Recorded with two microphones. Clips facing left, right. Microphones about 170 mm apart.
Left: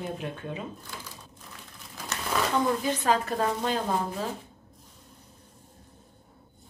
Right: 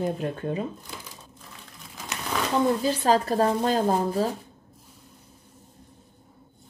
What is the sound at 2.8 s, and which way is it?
Speech, 35° right (ahead or behind).